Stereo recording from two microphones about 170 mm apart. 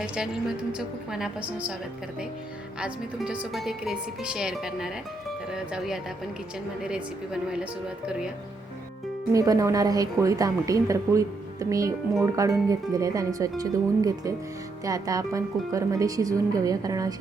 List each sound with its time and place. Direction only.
0.7 s speech: 5° right (ahead or behind)
2.8 s speech: 5° right (ahead or behind)
7.4 s speech: 5° right (ahead or behind)
9.3 s speech: 20° right (ahead or behind)